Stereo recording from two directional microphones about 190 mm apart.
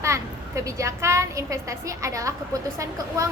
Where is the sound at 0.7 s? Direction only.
15° right (ahead or behind).